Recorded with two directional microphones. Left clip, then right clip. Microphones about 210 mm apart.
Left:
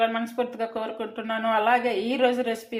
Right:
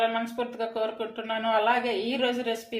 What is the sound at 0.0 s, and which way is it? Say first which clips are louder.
A woman's voice: left 2 dB; 20° left (ahead or behind).